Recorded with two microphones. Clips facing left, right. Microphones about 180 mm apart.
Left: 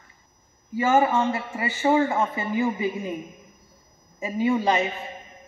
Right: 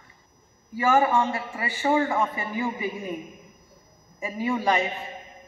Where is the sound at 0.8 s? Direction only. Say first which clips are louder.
Left 1 dB; 25° left (ahead or behind).